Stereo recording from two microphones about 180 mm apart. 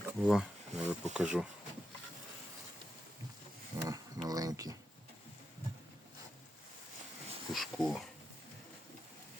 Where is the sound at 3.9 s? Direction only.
20° right (ahead or behind).